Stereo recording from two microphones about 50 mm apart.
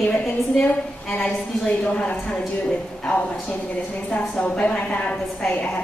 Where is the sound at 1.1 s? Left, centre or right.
Centre.